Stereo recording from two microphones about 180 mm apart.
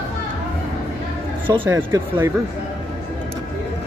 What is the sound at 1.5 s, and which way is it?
Speech, 20° right (ahead or behind).